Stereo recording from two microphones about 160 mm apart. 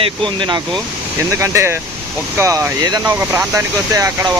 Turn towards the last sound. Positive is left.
turn(degrees=-20)  # may be behind; listen again after turning